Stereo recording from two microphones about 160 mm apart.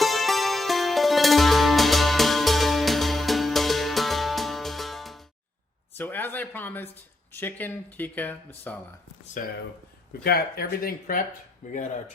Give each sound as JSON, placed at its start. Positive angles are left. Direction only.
{"t": 0.0, "sound": "music", "side_deg": 0}
{"t": 6.0, "sound": "speech", "side_deg": 10}
{"t": 9.4, "sound": "speech", "side_deg": 55}
{"t": 10.2, "sound": "speech", "side_deg": 75}
{"t": 11.6, "sound": "speech", "side_deg": 50}